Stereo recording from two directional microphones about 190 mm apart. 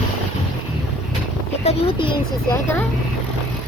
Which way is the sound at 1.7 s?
30° left (ahead or behind).